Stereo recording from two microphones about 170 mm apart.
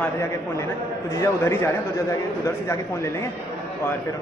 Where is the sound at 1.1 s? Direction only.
15° left (ahead or behind).